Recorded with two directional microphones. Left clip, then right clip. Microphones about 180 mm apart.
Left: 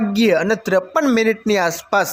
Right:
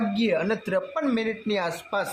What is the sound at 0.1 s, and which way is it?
Speech, 35° left (ahead or behind).